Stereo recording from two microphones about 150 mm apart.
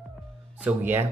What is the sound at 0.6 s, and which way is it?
Speech, 10° right (ahead or behind).